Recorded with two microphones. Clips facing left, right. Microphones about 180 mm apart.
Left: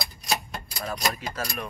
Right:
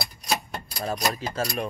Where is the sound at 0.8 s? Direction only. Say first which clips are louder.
Right 2 dB; 30° right (ahead or behind).